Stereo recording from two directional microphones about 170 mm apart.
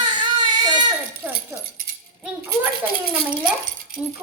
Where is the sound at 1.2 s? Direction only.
10° right (ahead or behind).